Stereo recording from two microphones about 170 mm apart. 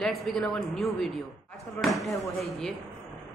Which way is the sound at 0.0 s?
Centre (ahead or behind).